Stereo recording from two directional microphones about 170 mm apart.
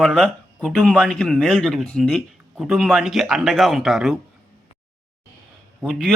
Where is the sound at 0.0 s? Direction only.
Centre (ahead or behind).